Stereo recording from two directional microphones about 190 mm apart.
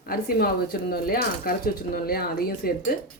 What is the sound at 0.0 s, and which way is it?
Speech, 50° left (ahead or behind).